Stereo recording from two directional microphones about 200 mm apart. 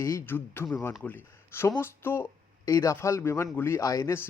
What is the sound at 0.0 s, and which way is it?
Speech, 15° left (ahead or behind).